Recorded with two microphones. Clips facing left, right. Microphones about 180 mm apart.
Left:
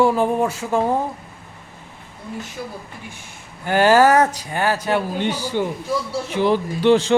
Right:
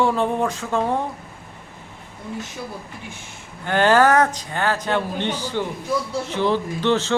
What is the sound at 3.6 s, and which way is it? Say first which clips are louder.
Speech: left 2 dB; 10° left (ahead or behind).